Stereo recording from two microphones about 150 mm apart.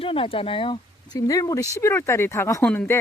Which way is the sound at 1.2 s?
20° left (ahead or behind).